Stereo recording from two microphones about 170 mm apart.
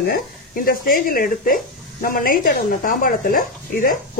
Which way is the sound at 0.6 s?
55° left (ahead or behind).